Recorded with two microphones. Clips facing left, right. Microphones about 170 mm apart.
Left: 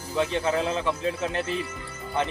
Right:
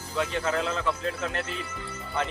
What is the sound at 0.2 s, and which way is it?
A man's voice, 15° left (ahead or behind).